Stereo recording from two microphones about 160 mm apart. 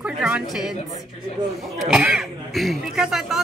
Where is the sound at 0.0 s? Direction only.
5° right (ahead or behind).